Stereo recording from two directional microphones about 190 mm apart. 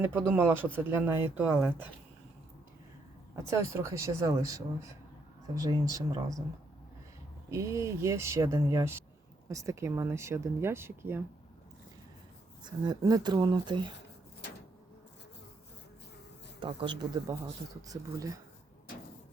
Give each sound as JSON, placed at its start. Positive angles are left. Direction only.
{"t": 0.0, "sound": "speech", "side_deg": -10}
{"t": 3.4, "sound": "speech", "side_deg": -15}
{"t": 7.5, "sound": "speech", "side_deg": -15}
{"t": 12.6, "sound": "speech", "side_deg": -20}
{"t": 16.6, "sound": "speech", "side_deg": -25}